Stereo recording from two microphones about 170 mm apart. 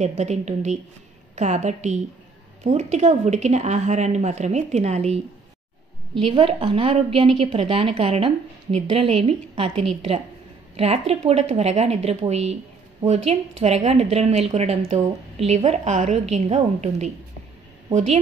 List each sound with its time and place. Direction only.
0.0 s a woman's voice: 40° right (ahead or behind)